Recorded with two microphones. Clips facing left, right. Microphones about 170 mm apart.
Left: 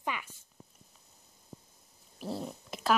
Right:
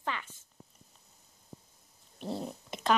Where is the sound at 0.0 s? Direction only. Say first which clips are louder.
Even; 10° left (ahead or behind).